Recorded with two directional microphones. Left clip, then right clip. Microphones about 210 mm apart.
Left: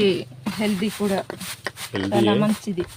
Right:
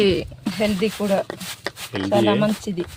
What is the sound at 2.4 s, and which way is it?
Speech, 45° right (ahead or behind).